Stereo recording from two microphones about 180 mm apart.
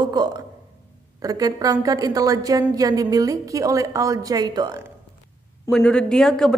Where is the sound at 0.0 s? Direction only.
25° right (ahead or behind).